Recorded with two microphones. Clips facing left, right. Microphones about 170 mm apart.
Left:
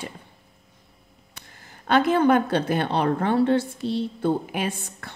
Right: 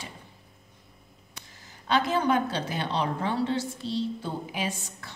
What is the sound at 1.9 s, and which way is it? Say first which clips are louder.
A woman's voice: left 6 dB; 55° left (ahead or behind).